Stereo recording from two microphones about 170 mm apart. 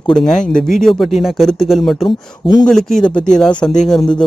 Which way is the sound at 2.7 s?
Centre (ahead or behind).